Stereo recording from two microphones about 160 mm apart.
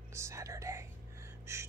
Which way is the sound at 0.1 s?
15° right (ahead or behind).